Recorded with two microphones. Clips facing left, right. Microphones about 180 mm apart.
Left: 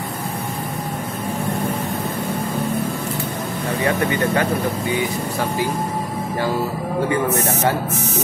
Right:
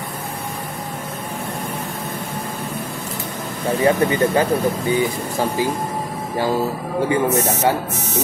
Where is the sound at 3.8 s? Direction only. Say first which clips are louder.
Right 4 dB; 30° right (ahead or behind).